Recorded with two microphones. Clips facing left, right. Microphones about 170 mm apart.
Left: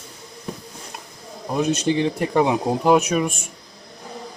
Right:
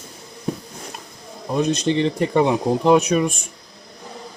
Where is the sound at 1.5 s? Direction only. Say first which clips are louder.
Right 1 dB; 10° left (ahead or behind).